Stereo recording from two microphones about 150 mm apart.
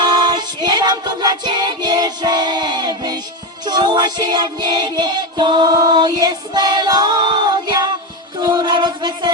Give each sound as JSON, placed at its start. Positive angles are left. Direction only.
{"t": 0.0, "sound": "music", "side_deg": -30}